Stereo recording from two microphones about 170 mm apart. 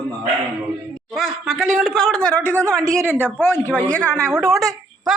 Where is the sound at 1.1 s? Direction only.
Centre (ahead or behind).